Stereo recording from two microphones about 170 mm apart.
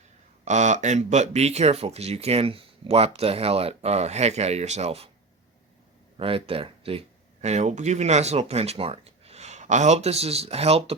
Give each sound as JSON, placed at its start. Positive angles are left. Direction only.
{"t": 0.4, "sound": "speech", "side_deg": -45}
{"t": 6.1, "sound": "speech", "side_deg": -35}